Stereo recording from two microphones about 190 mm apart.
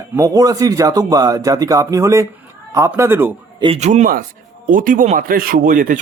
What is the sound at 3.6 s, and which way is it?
Speech, 35° right (ahead or behind).